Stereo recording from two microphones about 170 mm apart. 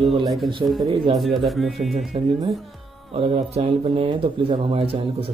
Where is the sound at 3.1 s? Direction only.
35° right (ahead or behind).